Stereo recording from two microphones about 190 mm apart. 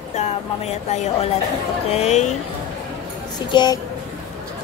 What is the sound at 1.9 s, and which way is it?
Speech, 35° left (ahead or behind).